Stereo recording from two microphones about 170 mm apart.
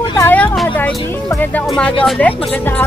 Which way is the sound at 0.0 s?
25° left (ahead or behind).